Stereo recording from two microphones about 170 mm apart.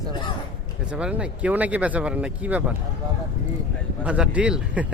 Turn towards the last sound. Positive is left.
turn(degrees=-5)  # may be behind; listen again after turning